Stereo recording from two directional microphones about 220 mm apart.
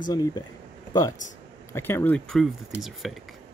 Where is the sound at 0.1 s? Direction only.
15° left (ahead or behind).